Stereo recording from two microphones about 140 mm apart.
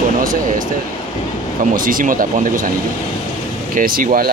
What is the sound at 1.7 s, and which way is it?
Speech, 80° right.